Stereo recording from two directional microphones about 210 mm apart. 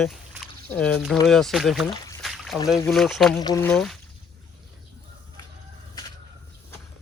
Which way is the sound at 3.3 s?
15° left (ahead or behind).